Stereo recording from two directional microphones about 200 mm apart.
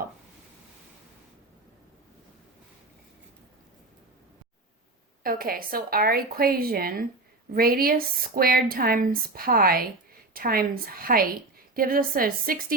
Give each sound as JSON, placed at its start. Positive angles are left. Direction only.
{"t": 5.2, "sound": "a woman's voice", "side_deg": -45}